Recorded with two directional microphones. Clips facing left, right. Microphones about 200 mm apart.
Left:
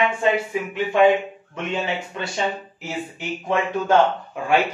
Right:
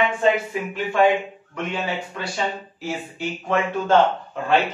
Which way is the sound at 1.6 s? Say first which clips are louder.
Left 2 dB; 25° left (ahead or behind).